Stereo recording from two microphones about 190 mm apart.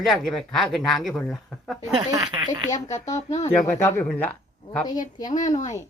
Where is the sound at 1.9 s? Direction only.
25° right (ahead or behind).